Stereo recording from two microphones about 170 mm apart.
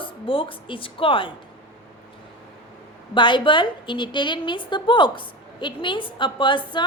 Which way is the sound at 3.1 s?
30° left (ahead or behind).